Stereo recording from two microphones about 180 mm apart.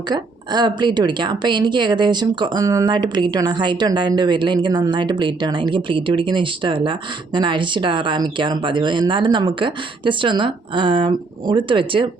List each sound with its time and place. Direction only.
0.1 s a woman's voice: 25° right (ahead or behind)